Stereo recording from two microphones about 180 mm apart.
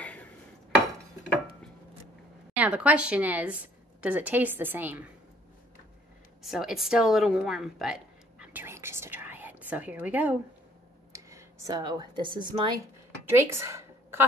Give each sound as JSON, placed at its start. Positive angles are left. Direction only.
{"t": 0.0, "sound": "dishes", "side_deg": 10}
{"t": 2.5, "sound": "a woman's voice", "side_deg": -10}
{"t": 6.4, "sound": "a woman's voice", "side_deg": 0}
{"t": 13.2, "sound": "a sound", "side_deg": -15}